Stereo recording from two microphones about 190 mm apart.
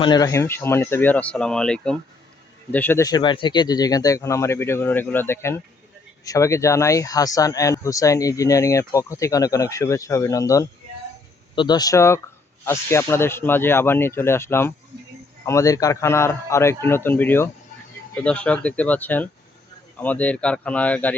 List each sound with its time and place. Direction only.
0.0 s speech: 20° left (ahead or behind)